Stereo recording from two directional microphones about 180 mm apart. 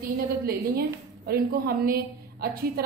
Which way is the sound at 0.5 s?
55° right (ahead or behind).